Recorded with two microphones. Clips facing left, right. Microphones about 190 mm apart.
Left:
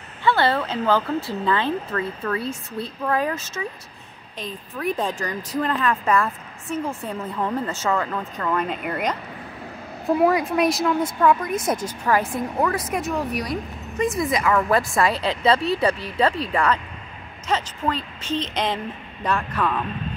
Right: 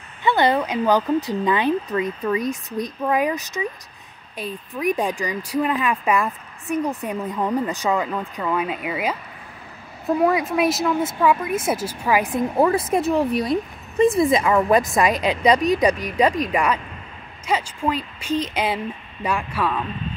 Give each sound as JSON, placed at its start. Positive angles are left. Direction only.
{"t": 0.2, "sound": "a woman's voice", "side_deg": -20}
{"t": 12.5, "sound": "a woman's voice", "side_deg": -30}